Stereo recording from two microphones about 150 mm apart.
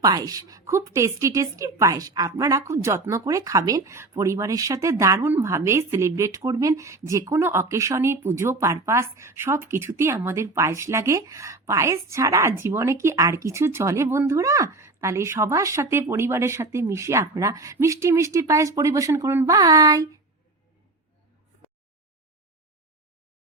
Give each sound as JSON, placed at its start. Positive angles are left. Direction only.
{"t": 0.0, "sound": "a woman's voice", "side_deg": -25}